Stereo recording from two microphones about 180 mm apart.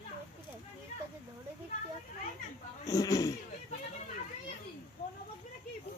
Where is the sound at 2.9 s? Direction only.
20° left (ahead or behind).